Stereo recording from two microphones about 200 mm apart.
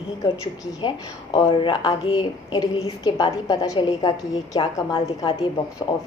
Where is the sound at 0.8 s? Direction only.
20° left (ahead or behind).